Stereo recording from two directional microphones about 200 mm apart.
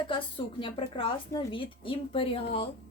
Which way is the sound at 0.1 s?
25° left (ahead or behind).